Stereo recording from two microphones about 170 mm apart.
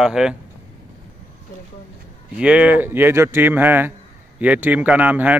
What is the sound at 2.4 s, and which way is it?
Speech, 5° right (ahead or behind).